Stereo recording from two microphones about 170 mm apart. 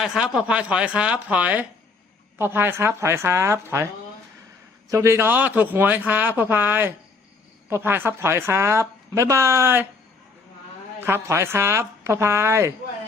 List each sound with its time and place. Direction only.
0.0 s a woman's voice: centre (ahead or behind)
4.9 s a woman's voice: 15° right (ahead or behind)
11.0 s a woman's voice: 15° right (ahead or behind)